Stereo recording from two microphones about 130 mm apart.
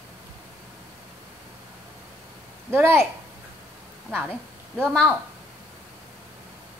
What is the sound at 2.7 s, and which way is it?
Speech, 20° right (ahead or behind).